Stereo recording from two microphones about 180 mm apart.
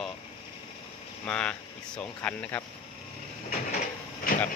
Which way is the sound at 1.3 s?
5° left (ahead or behind).